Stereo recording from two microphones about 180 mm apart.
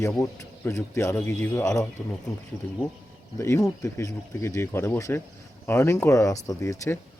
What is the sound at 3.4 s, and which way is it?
Speech, 15° left (ahead or behind).